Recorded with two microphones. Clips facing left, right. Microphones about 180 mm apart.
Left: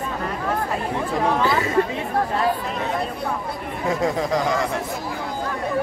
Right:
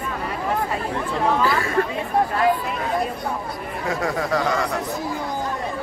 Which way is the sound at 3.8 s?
20° left (ahead or behind).